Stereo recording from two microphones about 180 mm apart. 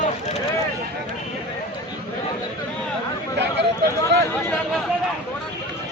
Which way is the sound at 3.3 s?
70° right (ahead or behind).